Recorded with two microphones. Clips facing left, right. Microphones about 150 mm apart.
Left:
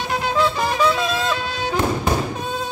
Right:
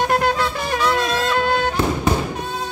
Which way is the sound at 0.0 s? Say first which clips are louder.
Right 2 dB; 55° right (ahead or behind).